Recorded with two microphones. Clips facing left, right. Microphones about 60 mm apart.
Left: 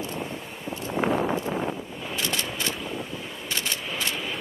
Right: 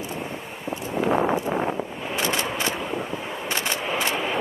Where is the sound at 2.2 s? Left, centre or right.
Right.